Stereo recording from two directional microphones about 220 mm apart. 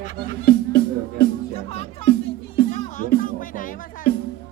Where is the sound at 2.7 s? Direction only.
35° left (ahead or behind).